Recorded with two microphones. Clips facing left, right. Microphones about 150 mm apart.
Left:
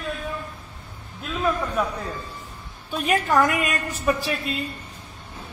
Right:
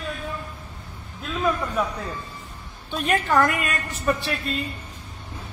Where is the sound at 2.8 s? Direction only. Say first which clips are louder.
Left 1 dB; 5° left (ahead or behind).